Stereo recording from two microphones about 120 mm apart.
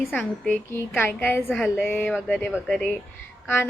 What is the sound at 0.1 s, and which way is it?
A woman's voice, 15° left (ahead or behind).